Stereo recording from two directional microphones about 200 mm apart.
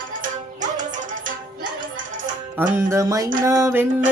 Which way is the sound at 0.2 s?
40° right (ahead or behind).